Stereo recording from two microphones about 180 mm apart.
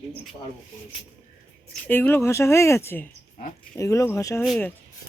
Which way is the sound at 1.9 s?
10° left (ahead or behind).